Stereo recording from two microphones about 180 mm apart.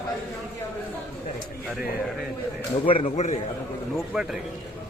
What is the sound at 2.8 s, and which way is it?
Speech, 30° left (ahead or behind).